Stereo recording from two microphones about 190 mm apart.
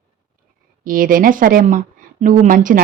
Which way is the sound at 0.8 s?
45° right (ahead or behind).